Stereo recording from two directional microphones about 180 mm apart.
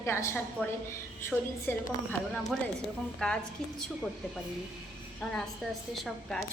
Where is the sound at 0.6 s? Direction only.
10° right (ahead or behind).